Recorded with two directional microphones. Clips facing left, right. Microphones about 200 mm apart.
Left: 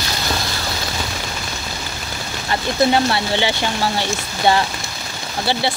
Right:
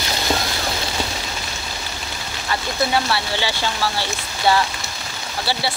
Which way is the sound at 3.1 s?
20° left (ahead or behind).